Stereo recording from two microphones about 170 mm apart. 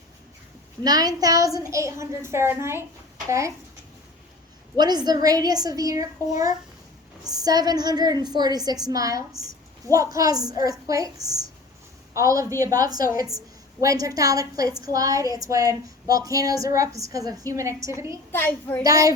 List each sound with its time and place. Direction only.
0.8 s a woman's voice: 25° right (ahead or behind)
4.8 s a woman's voice: 25° right (ahead or behind)
18.3 s a child's voice: 10° left (ahead or behind)
18.8 s a woman's voice: 20° right (ahead or behind)